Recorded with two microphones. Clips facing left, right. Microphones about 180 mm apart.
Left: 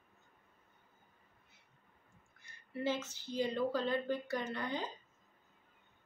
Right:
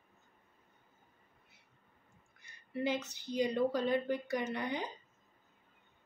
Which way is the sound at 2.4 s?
15° right (ahead or behind).